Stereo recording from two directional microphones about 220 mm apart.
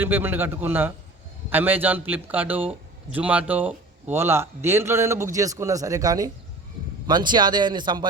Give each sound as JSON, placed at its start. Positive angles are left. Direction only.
{"t": 0.0, "sound": "a man's voice", "side_deg": -10}